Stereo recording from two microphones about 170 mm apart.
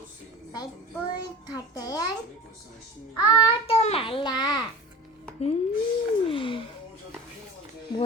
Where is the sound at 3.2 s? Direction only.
25° left (ahead or behind).